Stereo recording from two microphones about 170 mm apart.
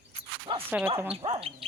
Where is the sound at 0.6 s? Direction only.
10° right (ahead or behind).